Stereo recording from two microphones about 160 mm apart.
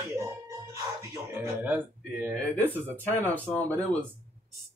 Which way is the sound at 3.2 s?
10° left (ahead or behind).